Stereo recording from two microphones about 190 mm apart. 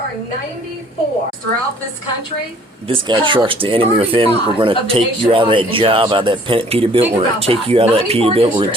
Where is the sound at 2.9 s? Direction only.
25° right (ahead or behind).